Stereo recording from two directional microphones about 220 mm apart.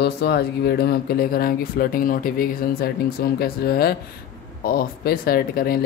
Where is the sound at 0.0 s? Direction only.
50° left (ahead or behind).